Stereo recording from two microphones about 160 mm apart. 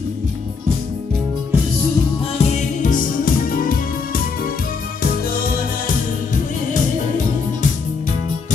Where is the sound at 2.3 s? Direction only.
45° left (ahead or behind); by 4.2 s 65° left (ahead or behind).